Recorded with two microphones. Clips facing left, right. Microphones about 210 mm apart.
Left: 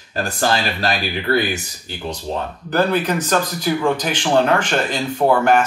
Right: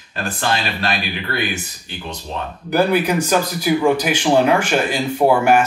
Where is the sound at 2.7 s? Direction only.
10° right (ahead or behind).